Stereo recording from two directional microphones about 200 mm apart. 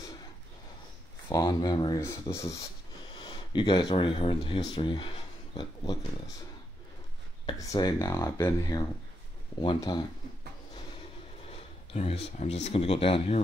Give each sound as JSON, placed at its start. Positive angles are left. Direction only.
{"t": 1.3, "sound": "speech", "side_deg": 20}
{"t": 7.4, "sound": "speech", "side_deg": 15}
{"t": 11.5, "sound": "a sound", "side_deg": 30}
{"t": 12.6, "sound": "speech", "side_deg": 30}